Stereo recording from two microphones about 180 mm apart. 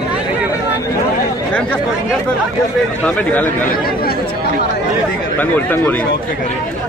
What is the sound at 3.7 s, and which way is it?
Speech, 55° left (ahead or behind).